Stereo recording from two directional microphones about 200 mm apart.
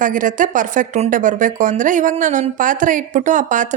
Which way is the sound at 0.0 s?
40° right (ahead or behind).